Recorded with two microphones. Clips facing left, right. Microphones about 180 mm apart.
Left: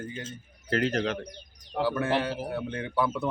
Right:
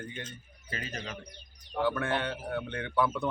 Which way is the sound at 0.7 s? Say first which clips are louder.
Left 13 dB; 70° left (ahead or behind).